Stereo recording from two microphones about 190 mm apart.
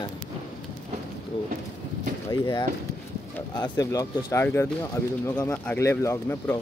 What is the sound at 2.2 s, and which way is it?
Speech, 20° left (ahead or behind).